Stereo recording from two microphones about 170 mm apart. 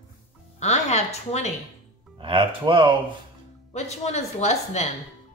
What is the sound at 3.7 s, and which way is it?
Speech, 40° left (ahead or behind).